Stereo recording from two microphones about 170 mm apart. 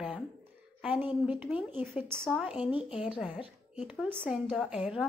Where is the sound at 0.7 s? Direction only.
10° right (ahead or behind).